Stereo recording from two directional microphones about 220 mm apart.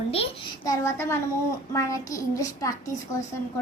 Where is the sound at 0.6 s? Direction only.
15° left (ahead or behind).